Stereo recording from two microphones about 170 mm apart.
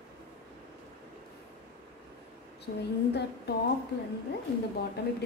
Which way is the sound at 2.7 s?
55° left (ahead or behind).